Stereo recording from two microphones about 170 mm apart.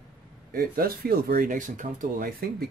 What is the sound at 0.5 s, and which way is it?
Speech, 60° right (ahead or behind).